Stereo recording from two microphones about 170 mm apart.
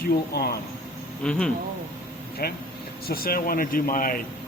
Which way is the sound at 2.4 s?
65° left (ahead or behind).